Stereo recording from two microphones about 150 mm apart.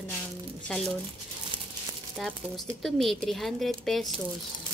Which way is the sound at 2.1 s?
Centre (ahead or behind).